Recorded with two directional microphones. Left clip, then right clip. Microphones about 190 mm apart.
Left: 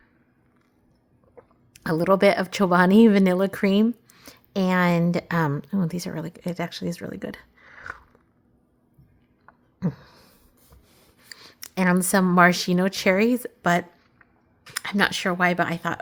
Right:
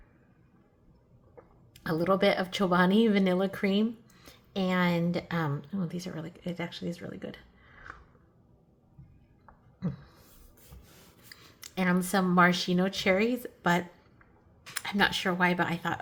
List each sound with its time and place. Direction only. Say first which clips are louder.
1.4 s a woman's voice: left 7 dB; 50° left (ahead or behind)
9.8 s a sound: left 8 dB; 50° left (ahead or behind)
11.3 s a woman's voice: left 7 dB; 55° left (ahead or behind)